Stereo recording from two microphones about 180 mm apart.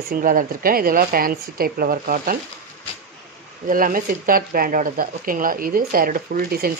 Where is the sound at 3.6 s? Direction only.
50° right (ahead or behind).